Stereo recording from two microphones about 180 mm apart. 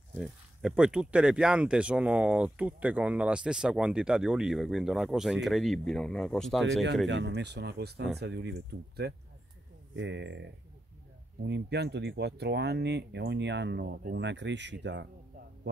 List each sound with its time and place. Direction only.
0.1 s speech: 5° right (ahead or behind)
7.1 s speech: 85° right; by 9.1 s 65° right (ahead or behind)
9.9 s speech: 85° right
11.4 s speech: 70° right (ahead or behind)